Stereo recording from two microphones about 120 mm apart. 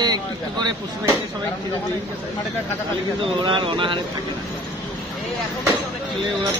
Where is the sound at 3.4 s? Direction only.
40° right (ahead or behind).